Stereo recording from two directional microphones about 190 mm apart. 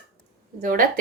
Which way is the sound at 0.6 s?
45° right (ahead or behind).